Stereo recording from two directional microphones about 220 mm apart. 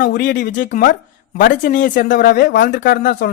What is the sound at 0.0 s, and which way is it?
Speech, 40° left (ahead or behind).